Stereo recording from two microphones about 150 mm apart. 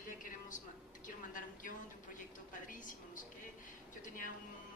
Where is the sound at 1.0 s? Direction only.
60° left (ahead or behind).